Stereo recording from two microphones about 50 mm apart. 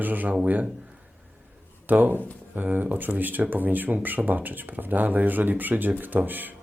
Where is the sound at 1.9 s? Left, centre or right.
Right.